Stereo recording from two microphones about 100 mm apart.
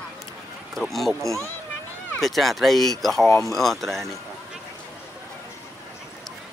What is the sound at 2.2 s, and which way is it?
Speech, centre (ahead or behind).